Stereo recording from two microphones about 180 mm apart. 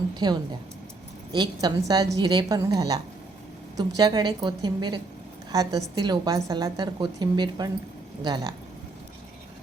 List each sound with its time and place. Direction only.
0.2 s a woman's voice: 20° right (ahead or behind)